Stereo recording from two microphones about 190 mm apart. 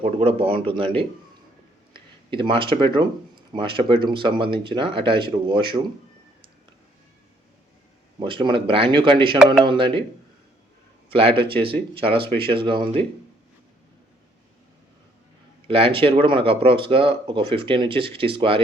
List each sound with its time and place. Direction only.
0.0 s speech: 30° right (ahead or behind)
1.9 s speech: 25° right (ahead or behind)
8.2 s speech: 25° right (ahead or behind)
11.1 s speech: 30° right (ahead or behind)
15.6 s speech: 30° right (ahead or behind)